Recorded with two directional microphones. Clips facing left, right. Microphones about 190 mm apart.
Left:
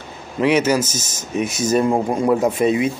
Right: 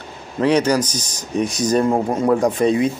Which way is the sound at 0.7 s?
25° left (ahead or behind).